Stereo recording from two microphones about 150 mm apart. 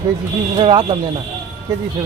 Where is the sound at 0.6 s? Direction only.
35° right (ahead or behind).